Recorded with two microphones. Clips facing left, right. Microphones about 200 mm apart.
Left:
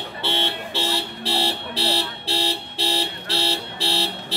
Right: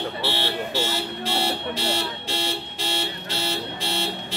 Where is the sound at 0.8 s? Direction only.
35° left (ahead or behind).